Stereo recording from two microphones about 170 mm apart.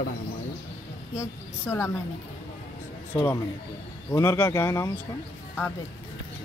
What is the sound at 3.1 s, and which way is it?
A woman's voice, 15° left (ahead or behind).